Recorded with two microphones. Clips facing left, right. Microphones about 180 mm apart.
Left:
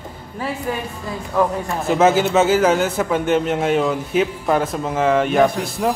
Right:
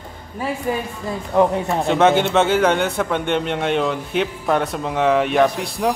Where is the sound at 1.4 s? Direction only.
25° right (ahead or behind).